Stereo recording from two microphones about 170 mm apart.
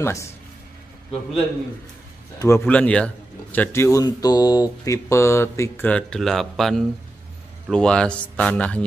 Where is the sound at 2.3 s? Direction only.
15° left (ahead or behind).